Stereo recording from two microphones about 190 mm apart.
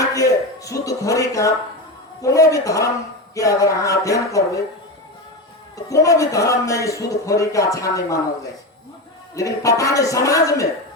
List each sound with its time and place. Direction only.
0.0 s a man's voice: 15° left (ahead or behind)
5.7 s a man's voice: 15° left (ahead or behind)
9.3 s a man's voice: 15° left (ahead or behind)